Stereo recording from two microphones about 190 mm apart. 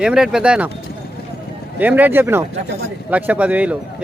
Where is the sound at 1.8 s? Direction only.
10° right (ahead or behind).